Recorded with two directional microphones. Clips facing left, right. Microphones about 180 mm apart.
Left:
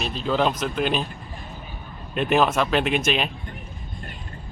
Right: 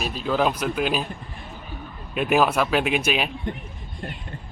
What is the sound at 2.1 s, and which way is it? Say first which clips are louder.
Speech: even; 5° right (ahead or behind).